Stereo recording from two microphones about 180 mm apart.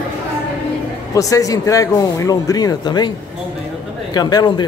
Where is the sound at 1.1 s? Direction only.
20° left (ahead or behind).